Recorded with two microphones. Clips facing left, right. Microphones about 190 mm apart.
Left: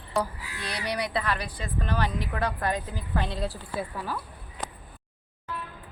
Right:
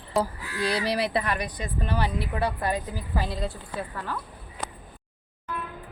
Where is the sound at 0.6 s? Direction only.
30° right (ahead or behind); by 4.2 s 10° left (ahead or behind).